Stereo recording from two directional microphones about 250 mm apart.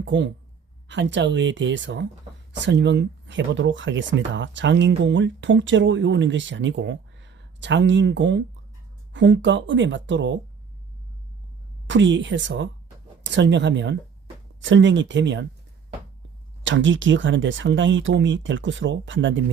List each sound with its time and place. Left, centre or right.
0.0 s speech: right
11.9 s speech: right
16.6 s speech: right